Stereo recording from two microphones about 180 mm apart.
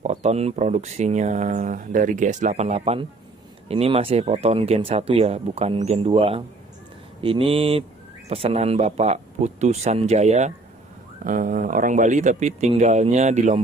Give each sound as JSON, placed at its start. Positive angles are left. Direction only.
{"t": 0.0, "sound": "speech", "side_deg": -40}
{"t": 11.2, "sound": "speech", "side_deg": -50}